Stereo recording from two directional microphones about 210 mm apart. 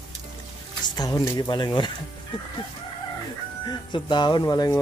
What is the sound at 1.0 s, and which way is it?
Speech, 15° left (ahead or behind).